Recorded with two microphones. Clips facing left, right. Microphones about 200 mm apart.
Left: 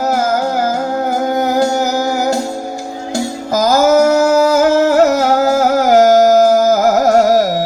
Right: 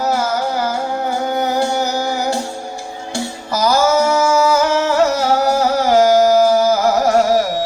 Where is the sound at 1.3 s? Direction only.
40° left (ahead or behind).